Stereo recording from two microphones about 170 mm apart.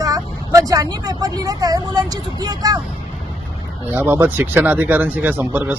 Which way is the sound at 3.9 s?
10° right (ahead or behind).